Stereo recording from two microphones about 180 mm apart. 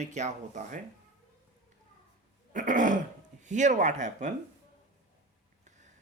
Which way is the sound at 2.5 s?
45° right (ahead or behind).